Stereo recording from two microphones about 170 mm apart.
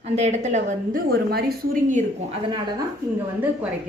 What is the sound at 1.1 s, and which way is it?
A woman's voice, 65° right (ahead or behind).